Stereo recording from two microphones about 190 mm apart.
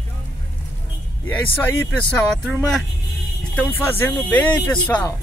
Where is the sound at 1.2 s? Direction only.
10° left (ahead or behind).